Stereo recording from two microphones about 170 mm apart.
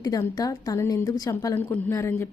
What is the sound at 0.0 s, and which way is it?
A woman's voice, 20° left (ahead or behind).